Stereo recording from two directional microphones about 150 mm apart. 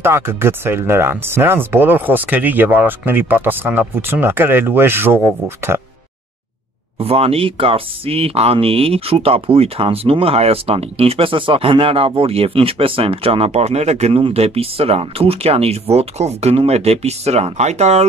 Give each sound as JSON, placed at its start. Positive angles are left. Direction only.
{"t": 0.0, "sound": "speech", "side_deg": -15}
{"t": 7.0, "sound": "speech", "side_deg": -40}